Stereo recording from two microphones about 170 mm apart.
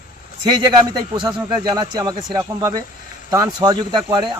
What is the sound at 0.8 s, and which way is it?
Speech, 25° right (ahead or behind).